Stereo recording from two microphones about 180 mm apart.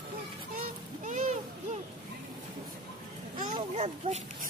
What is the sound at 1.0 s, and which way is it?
Speech, 45° right (ahead or behind).